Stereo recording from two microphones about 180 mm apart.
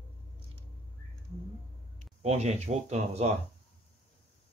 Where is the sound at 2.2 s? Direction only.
35° right (ahead or behind).